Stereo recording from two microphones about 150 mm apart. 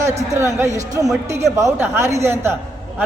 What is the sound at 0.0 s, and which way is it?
A man's voice, 20° right (ahead or behind).